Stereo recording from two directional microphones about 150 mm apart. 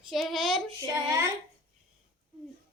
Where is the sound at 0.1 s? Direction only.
Centre (ahead or behind).